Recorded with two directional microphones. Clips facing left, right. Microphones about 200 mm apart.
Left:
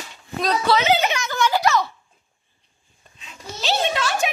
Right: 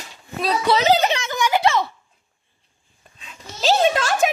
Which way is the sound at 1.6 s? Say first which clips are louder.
Right 1 dB; 30° right (ahead or behind).